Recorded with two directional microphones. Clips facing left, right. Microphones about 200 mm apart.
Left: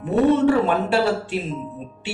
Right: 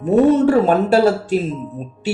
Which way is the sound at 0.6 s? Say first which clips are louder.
Right 6 dB; 40° right (ahead or behind).